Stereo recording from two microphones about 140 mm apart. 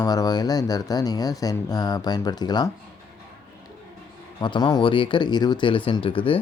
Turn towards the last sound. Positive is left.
turn(degrees=40)  # may be behind; listen again after turning